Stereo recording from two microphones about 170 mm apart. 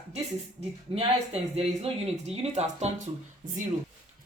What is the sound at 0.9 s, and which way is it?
Speech, 35° right (ahead or behind).